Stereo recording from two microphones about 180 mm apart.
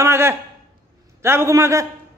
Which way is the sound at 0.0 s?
15° right (ahead or behind).